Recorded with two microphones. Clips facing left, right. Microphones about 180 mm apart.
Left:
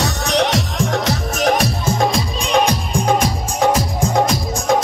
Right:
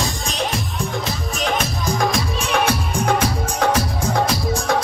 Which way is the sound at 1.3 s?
40° left (ahead or behind).